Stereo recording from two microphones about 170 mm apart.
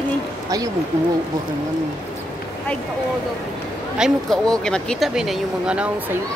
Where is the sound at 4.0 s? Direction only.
5° left (ahead or behind).